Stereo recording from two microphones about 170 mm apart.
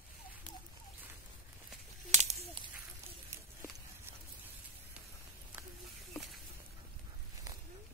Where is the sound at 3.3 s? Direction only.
15° right (ahead or behind).